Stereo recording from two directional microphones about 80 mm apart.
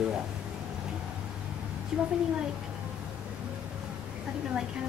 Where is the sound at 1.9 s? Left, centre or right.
Centre.